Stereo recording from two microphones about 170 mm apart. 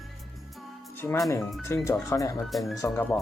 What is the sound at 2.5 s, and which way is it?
Speech, centre (ahead or behind).